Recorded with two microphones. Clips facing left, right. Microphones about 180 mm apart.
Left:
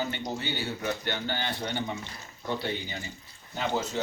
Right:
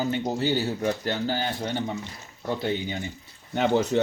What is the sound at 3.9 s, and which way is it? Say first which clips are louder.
Speech: right 10 dB; 65° right (ahead or behind).